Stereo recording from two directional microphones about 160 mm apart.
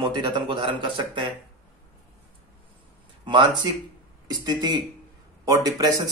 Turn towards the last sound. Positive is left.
turn(degrees=-25)  # may be behind; listen again after turning